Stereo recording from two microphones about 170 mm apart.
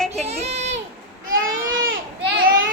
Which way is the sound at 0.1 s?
40° right (ahead or behind).